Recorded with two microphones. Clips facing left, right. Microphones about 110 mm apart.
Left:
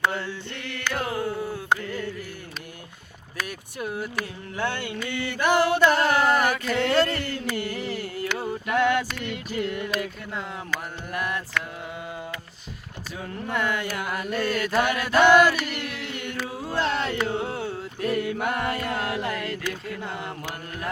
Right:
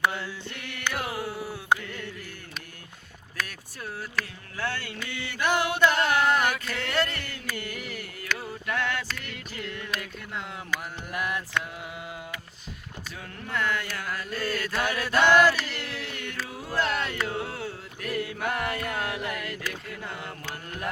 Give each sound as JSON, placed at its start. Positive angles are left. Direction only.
{"t": 0.1, "sound": "mantra", "side_deg": -5}
{"t": 3.8, "sound": "speech", "side_deg": 15}
{"t": 4.9, "sound": "mantra", "side_deg": -5}
{"t": 5.3, "sound": "music", "side_deg": 10}
{"t": 5.8, "sound": "carnatic music", "side_deg": 0}
{"t": 6.7, "sound": "a sound", "side_deg": 30}
{"t": 9.9, "sound": "a sound", "side_deg": 0}
{"t": 10.7, "sound": "mantra", "side_deg": -15}
{"t": 13.5, "sound": "music", "side_deg": 15}
{"t": 14.4, "sound": "mantra", "side_deg": 20}
{"t": 14.8, "sound": "music", "side_deg": 15}
{"t": 15.3, "sound": "chant", "side_deg": 10}